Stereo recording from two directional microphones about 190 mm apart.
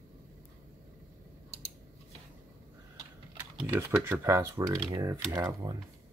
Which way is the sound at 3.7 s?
10° right (ahead or behind).